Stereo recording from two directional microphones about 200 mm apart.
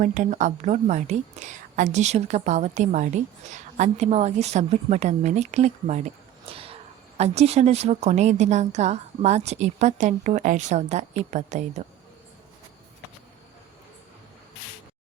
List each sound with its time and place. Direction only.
0.0 s a woman's voice: 40° right (ahead or behind)